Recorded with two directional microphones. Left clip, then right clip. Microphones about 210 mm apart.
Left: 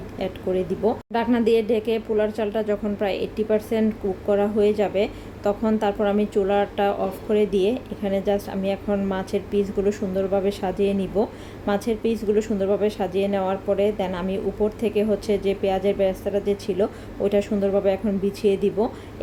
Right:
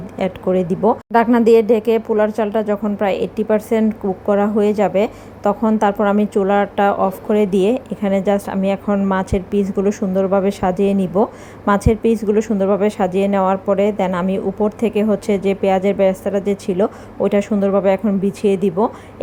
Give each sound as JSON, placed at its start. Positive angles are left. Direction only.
{"t": 0.2, "sound": "a woman's voice", "side_deg": -15}